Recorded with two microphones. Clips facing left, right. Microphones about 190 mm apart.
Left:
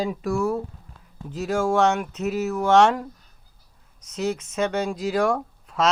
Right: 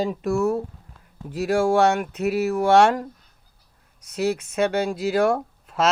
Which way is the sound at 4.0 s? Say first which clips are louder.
Right 3 dB; 10° right (ahead or behind).